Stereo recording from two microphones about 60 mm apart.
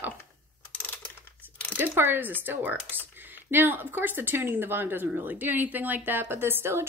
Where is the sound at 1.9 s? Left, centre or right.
Right.